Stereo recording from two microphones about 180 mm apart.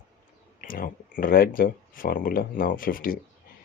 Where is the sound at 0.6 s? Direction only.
50° left (ahead or behind).